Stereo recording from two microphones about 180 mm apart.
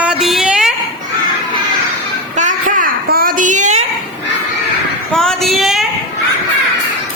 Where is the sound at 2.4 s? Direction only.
45° right (ahead or behind).